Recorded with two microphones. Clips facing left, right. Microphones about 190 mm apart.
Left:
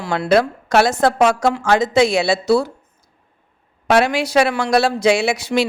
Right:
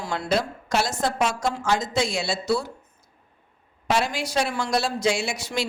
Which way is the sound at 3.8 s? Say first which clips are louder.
Left 9 dB; 65° left (ahead or behind).